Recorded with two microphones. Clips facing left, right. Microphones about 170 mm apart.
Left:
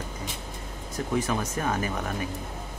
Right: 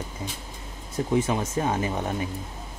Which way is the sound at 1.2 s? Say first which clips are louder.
Right 3 dB; 25° right (ahead or behind).